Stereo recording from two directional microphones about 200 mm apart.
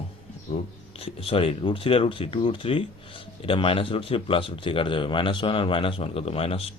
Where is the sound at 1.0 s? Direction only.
30° left (ahead or behind).